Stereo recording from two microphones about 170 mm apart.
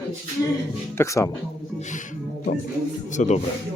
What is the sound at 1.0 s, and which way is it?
Speech, 20° left (ahead or behind).